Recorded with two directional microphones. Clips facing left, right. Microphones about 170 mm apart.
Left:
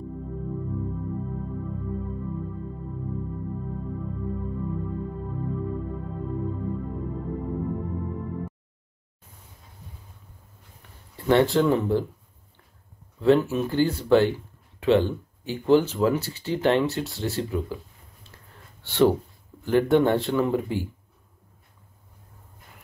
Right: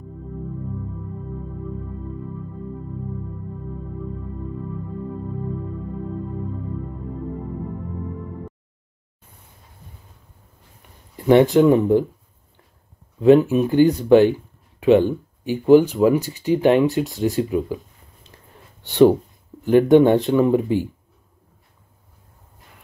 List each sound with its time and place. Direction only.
11.1 s speech: 15° right (ahead or behind)
13.2 s speech: 15° right (ahead or behind)
18.8 s speech: 15° right (ahead or behind)